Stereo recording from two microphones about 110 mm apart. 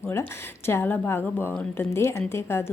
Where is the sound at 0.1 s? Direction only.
20° left (ahead or behind).